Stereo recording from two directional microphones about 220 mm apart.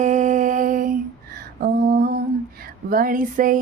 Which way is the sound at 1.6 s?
45° right (ahead or behind).